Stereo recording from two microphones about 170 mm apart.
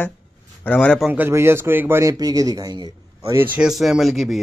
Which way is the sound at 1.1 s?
15° right (ahead or behind).